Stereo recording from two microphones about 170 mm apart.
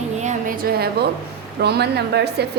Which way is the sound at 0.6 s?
70° right (ahead or behind).